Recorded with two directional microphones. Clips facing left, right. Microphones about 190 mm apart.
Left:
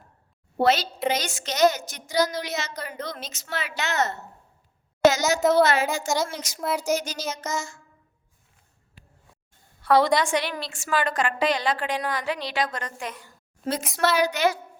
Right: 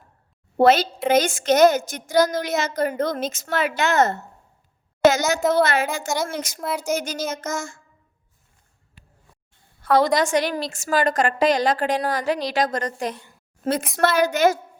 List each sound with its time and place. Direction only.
0.5 s a woman's voice: 50° right (ahead or behind)
5.4 s a woman's voice: centre (ahead or behind)
5.6 s a woman's voice: 55° right (ahead or behind)
6.6 s a woman's voice: centre (ahead or behind)
6.8 s a woman's voice: 55° right (ahead or behind)
9.8 s a sound: 45° right (ahead or behind)
10.2 s a woman's voice: 45° right (ahead or behind)
13.9 s a woman's voice: 50° right (ahead or behind)